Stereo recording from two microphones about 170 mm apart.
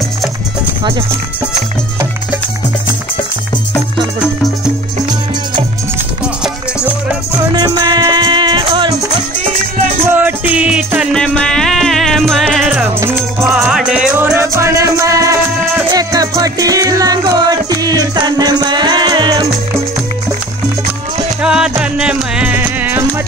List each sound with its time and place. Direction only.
7.5 s music: 25° right (ahead or behind)
10.0 s music: 10° right (ahead or behind)
21.4 s music: 5° right (ahead or behind)